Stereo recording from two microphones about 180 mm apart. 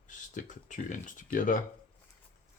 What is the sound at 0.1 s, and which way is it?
Speech, 45° left (ahead or behind).